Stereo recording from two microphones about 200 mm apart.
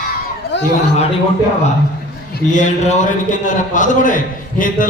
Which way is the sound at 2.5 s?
40° left (ahead or behind).